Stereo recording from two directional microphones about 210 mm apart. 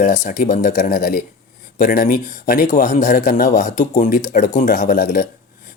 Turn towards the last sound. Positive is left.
turn(degrees=45)  # may be behind; listen again after turning